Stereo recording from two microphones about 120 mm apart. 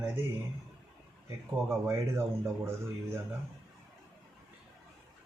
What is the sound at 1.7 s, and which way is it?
A man's voice, 25° right (ahead or behind).